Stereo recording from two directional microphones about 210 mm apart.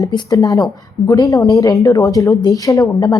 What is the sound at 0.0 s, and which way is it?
A woman's voice, 20° left (ahead or behind).